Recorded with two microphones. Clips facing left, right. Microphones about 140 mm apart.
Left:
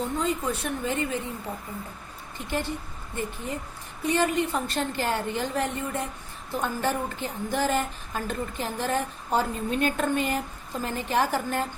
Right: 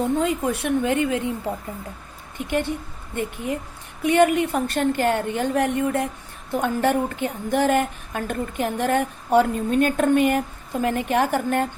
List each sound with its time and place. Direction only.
0.0 s a woman's voice: 65° right (ahead or behind)
2.5 s speech: 60° right (ahead or behind)
4.0 s speech: 65° right (ahead or behind)